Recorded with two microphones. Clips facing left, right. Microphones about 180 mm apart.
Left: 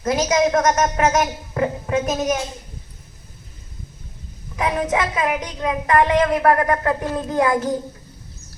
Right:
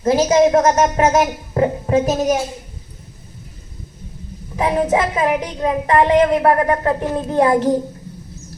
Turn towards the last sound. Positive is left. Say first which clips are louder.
# right 4 dB
turn(degrees=-30)  # may be behind; listen again after turning